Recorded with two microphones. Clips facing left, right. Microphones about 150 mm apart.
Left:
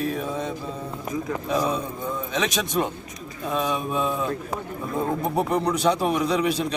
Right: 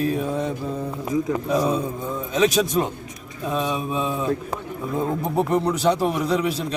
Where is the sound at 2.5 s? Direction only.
Centre (ahead or behind).